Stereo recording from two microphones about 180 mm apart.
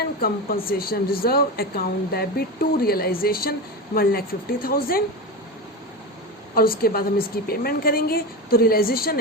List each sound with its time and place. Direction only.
0.0 s speech: 55° left (ahead or behind)
6.5 s speech: 55° left (ahead or behind)